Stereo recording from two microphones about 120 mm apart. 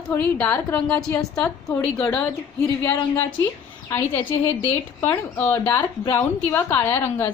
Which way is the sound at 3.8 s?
20° left (ahead or behind).